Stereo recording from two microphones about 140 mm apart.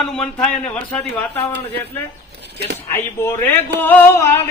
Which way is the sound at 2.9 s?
15° left (ahead or behind).